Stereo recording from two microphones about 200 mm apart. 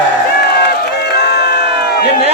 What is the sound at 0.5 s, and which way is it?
Crowd, 50° left (ahead or behind).